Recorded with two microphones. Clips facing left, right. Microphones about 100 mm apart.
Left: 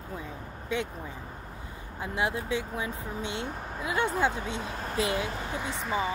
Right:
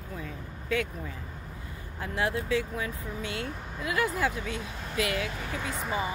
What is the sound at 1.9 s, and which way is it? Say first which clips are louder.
Speech: even; 20° left (ahead or behind).